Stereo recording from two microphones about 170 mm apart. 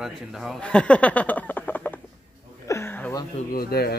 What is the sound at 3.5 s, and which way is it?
Speech, 65° left (ahead or behind).